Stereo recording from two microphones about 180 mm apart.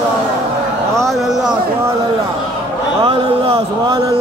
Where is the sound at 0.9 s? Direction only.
Centre (ahead or behind).